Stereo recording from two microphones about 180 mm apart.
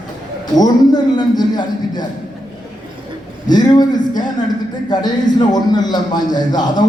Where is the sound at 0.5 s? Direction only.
20° left (ahead or behind).